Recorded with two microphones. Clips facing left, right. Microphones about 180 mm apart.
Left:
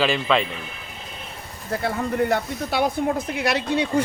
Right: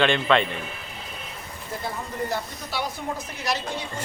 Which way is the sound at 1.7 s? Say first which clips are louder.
Left 8 dB; 65° left (ahead or behind).